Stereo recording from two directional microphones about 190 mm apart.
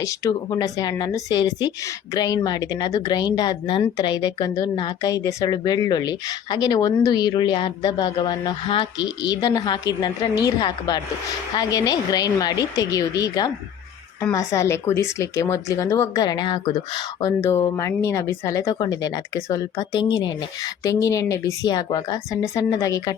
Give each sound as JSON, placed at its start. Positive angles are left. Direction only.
{"t": 0.0, "sound": "speech", "side_deg": 15}